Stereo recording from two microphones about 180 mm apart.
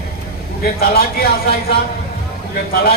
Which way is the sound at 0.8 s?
60° left (ahead or behind).